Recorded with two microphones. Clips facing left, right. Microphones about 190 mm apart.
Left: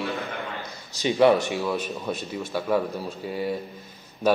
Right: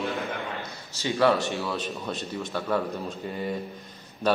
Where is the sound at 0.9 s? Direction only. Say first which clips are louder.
Left 4 dB; 15° left (ahead or behind).